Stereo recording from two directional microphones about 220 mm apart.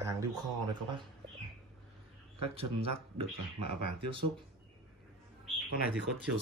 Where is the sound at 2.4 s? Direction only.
25° right (ahead or behind).